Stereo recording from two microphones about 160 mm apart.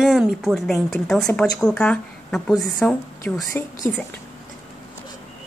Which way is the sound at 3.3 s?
20° left (ahead or behind).